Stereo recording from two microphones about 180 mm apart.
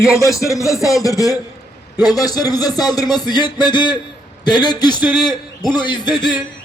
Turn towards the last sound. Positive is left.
turn(degrees=25)  # may be behind; listen again after turning